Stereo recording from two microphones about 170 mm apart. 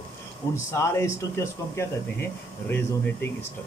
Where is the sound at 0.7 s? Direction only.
15° left (ahead or behind).